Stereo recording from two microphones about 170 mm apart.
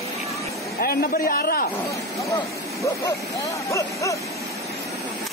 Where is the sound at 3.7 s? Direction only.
20° left (ahead or behind).